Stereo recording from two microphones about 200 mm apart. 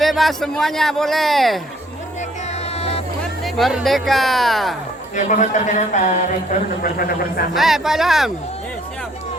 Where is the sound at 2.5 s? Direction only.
30° left (ahead or behind).